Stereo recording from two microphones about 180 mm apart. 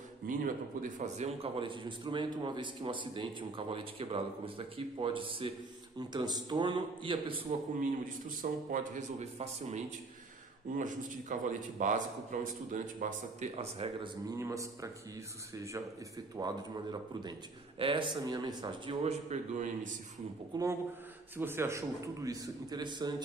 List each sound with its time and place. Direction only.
0.3 s a man's voice: 45° right (ahead or behind); by 7.5 s 30° right (ahead or behind)
8.4 s a man's voice: 45° right (ahead or behind)
14.3 s a man's voice: 15° right (ahead or behind)
19.0 s a man's voice: 40° right (ahead or behind)
20.5 s a man's voice: 20° right (ahead or behind)